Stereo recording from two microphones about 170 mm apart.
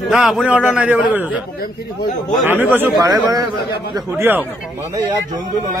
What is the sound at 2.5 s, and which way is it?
Speech, 10° right (ahead or behind).